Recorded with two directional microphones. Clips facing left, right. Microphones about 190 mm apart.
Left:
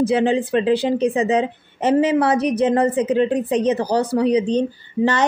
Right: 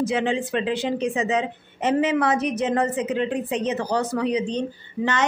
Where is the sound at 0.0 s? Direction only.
35° left (ahead or behind).